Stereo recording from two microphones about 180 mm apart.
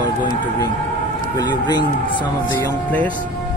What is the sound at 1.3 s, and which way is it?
Speech, 25° left (ahead or behind).